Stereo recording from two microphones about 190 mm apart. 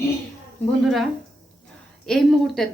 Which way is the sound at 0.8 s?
Centre (ahead or behind).